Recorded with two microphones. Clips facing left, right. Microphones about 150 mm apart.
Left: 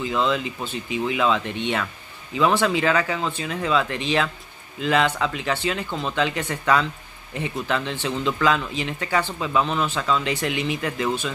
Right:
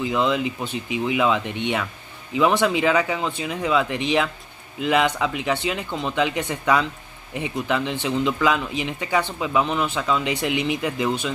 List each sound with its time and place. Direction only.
0.0 s speech: 15° right (ahead or behind)